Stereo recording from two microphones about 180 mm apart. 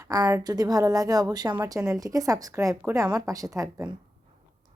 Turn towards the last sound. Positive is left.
turn(degrees=-20)  # may be behind; listen again after turning